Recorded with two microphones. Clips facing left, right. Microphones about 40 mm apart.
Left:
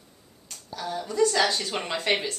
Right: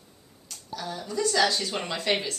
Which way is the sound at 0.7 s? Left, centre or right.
Centre.